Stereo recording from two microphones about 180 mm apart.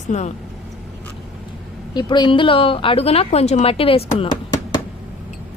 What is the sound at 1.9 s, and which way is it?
A woman's voice, 25° left (ahead or behind).